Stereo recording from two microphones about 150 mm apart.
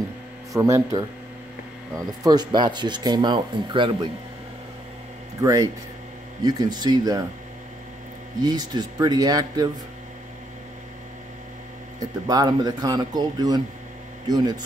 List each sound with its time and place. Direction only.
0.5 s speech: 20° right (ahead or behind)
5.4 s speech: 25° right (ahead or behind)
8.4 s speech: 25° right (ahead or behind)
12.3 s speech: 25° right (ahead or behind)